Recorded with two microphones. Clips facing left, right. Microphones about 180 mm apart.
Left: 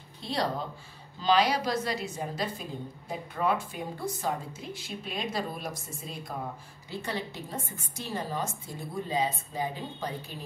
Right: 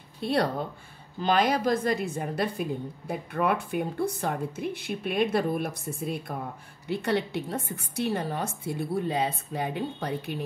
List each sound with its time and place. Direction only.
0.2 s a woman's voice: 60° right (ahead or behind)